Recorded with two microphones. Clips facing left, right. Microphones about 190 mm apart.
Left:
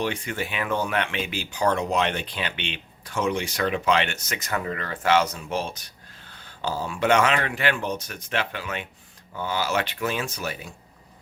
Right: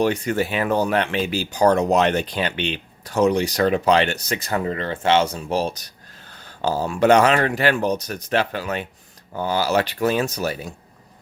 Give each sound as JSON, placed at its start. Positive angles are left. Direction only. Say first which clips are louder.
{"t": 0.0, "sound": "speech", "louder": "right 8 dB", "side_deg": -40}